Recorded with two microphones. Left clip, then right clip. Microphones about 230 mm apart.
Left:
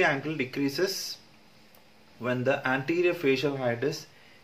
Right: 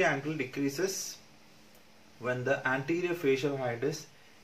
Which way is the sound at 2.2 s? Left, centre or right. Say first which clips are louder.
Left 3 dB; left.